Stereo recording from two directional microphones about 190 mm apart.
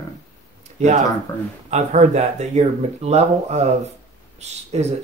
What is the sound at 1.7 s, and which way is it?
Speech, 40° right (ahead or behind).